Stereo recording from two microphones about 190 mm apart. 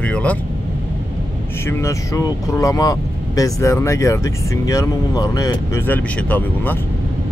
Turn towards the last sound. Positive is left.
turn(degrees=10)  # may be behind; listen again after turning